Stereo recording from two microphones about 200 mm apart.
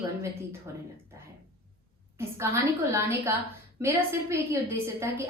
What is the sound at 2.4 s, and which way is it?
A woman's voice, 15° right (ahead or behind).